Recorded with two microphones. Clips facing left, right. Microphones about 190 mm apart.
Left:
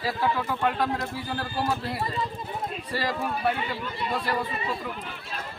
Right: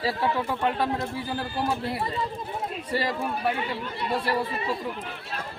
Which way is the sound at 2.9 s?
25° right (ahead or behind).